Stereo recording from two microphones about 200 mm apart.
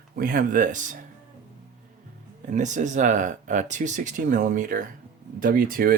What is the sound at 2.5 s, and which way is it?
Speech, 35° right (ahead or behind).